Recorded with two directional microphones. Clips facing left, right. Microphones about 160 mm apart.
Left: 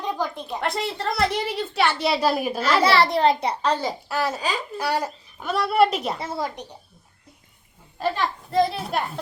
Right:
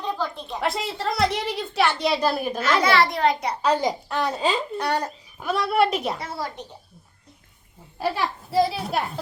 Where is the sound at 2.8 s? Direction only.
30° left (ahead or behind).